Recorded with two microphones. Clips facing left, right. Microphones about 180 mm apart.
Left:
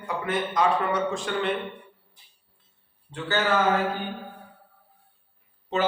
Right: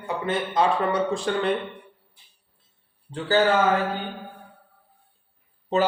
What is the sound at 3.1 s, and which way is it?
Speech, 35° right (ahead or behind).